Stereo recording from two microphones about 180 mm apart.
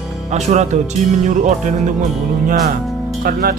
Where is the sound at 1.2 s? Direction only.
45° right (ahead or behind).